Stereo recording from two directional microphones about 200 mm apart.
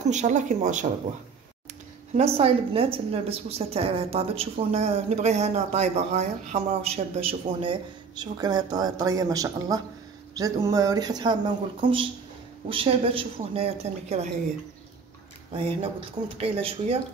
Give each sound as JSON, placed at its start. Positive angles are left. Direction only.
{"t": 0.0, "sound": "speech", "side_deg": -35}
{"t": 2.1, "sound": "a woman's voice", "side_deg": -30}
{"t": 15.5, "sound": "a woman's voice", "side_deg": -25}